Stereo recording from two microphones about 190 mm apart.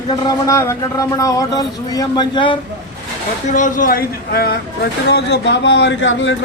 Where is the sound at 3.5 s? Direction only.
40° left (ahead or behind).